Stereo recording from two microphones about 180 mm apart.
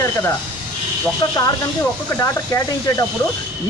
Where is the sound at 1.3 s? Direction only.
20° left (ahead or behind).